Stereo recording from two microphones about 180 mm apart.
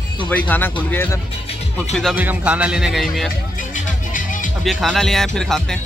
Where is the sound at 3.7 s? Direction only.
45° left (ahead or behind).